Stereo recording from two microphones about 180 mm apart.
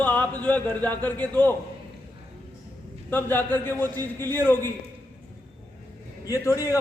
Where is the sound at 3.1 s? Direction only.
10° left (ahead or behind).